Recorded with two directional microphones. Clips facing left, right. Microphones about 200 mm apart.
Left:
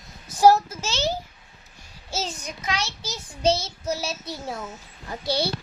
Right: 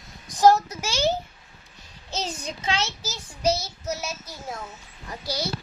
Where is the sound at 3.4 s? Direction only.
30° left (ahead or behind).